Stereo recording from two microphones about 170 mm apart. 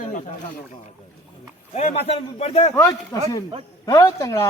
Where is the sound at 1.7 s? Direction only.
40° left (ahead or behind).